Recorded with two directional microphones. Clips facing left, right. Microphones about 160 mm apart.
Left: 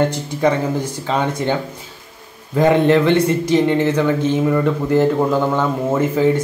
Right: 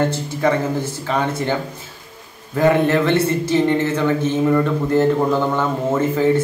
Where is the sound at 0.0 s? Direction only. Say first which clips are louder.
Left 2 dB; 15° left (ahead or behind).